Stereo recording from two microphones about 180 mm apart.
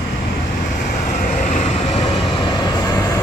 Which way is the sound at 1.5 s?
30° left (ahead or behind).